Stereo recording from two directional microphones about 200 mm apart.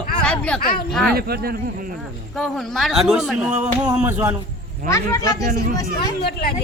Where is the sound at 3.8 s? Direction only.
15° right (ahead or behind).